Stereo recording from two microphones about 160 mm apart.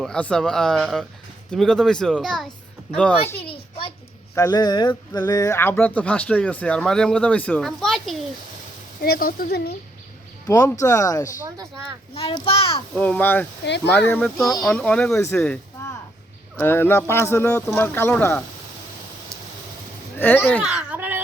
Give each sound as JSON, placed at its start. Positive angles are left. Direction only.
{"t": 0.0, "sound": "speech", "side_deg": 5}
{"t": 3.4, "sound": "a sound", "side_deg": 35}
{"t": 4.4, "sound": "speech", "side_deg": 25}
{"t": 9.0, "sound": "speech", "side_deg": 70}
{"t": 10.4, "sound": "speech", "side_deg": 20}
{"t": 11.4, "sound": "speech", "side_deg": -20}
{"t": 12.1, "sound": "a child's voice", "side_deg": 35}
{"t": 13.0, "sound": "speech", "side_deg": 10}
{"t": 13.7, "sound": "speech", "side_deg": 90}
{"t": 14.1, "sound": "speech", "side_deg": 5}
{"t": 16.6, "sound": "speech", "side_deg": 15}
{"t": 20.1, "sound": "speech", "side_deg": 10}
{"t": 20.6, "sound": "a sound", "side_deg": -5}